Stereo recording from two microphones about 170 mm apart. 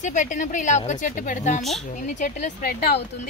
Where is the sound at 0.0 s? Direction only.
45° left (ahead or behind).